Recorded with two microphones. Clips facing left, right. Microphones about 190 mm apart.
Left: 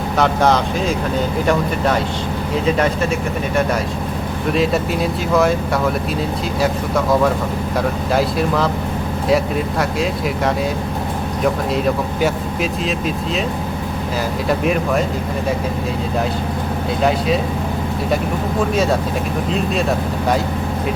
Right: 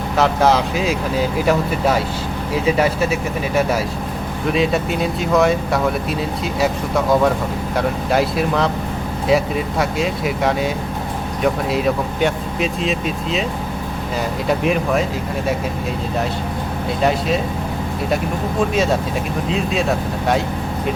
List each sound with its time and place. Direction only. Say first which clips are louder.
0.2 s speech: even; 5° right (ahead or behind)
2.6 s speech: right 1 dB; 5° right (ahead or behind)
12.2 s speech: even; centre (ahead or behind)
14.6 s speech: even; centre (ahead or behind)
17.0 s speech: left 1 dB; centre (ahead or behind)
18.7 s speech: left 1 dB; centre (ahead or behind)